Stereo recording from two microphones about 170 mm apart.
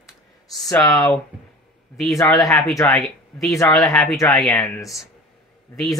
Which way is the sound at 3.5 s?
20° left (ahead or behind).